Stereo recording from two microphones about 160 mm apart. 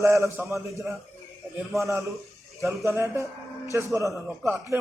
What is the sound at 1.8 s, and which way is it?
A man's voice, 20° right (ahead or behind).